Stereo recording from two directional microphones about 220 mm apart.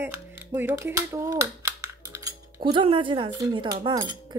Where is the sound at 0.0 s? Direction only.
10° right (ahead or behind).